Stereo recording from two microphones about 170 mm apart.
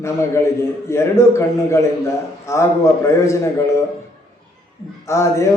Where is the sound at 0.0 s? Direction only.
15° left (ahead or behind).